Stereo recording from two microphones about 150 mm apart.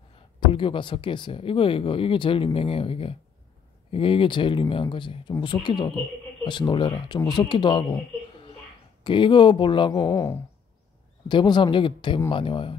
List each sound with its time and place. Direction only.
0.4 s speech: 35° left (ahead or behind)
9.0 s speech: 30° left (ahead or behind)